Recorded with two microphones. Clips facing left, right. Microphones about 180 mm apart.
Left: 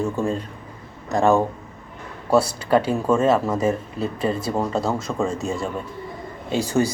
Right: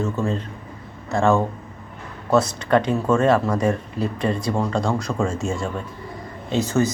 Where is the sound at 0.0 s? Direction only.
15° left (ahead or behind).